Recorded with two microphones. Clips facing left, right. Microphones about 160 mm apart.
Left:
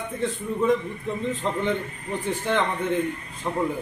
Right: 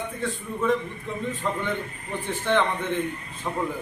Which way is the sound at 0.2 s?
20° left (ahead or behind).